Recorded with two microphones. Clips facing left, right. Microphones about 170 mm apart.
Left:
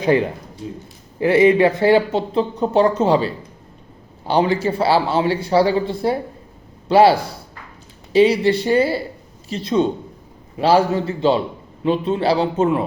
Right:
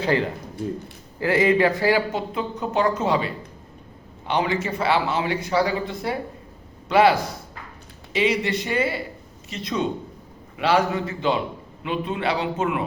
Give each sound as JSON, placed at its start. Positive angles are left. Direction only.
{"t": 0.0, "sound": "a man's voice", "side_deg": 15}